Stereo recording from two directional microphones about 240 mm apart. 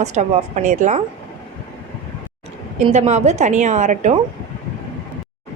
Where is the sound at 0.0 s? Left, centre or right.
Right.